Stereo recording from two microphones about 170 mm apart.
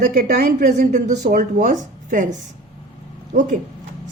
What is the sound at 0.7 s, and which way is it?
A woman's voice, 45° right (ahead or behind).